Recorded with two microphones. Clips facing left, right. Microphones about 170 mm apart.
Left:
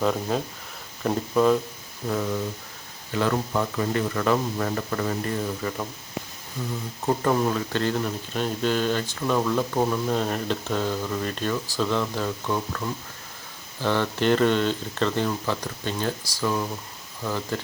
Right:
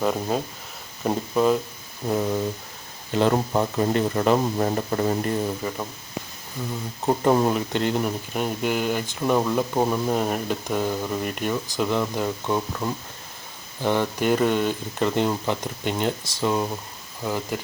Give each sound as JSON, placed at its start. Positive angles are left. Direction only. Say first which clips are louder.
{"t": 0.0, "sound": "speech", "louder": "right 1 dB", "side_deg": -10}
{"t": 2.0, "sound": "speech", "louder": "right 3 dB", "side_deg": -25}
{"t": 7.0, "sound": "speech", "louder": "right 3 dB", "side_deg": -20}
{"t": 13.8, "sound": "speech", "louder": "right 1 dB", "side_deg": -15}